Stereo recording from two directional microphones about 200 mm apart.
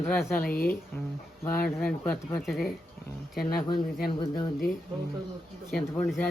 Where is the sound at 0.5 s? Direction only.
45° left (ahead or behind).